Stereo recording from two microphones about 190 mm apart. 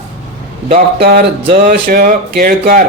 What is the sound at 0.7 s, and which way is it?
Speech, 50° right (ahead or behind).